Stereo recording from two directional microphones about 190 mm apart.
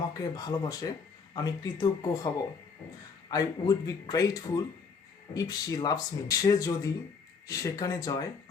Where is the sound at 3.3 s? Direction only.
20° left (ahead or behind).